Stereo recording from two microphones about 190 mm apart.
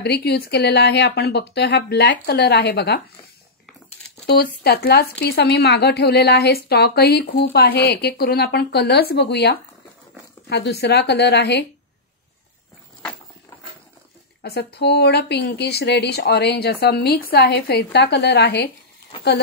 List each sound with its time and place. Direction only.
0.0 s speech: 60° left (ahead or behind)
4.4 s speech: 60° left (ahead or behind)
14.4 s speech: 60° left (ahead or behind)